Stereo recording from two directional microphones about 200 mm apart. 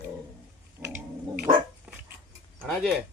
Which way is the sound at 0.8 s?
10° right (ahead or behind).